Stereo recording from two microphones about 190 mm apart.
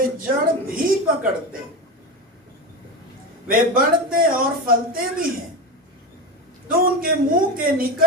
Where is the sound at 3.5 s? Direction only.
50° right (ahead or behind).